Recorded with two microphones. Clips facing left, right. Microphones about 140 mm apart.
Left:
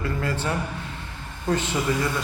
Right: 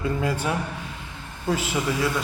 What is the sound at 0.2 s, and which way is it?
A man's voice, 10° right (ahead or behind).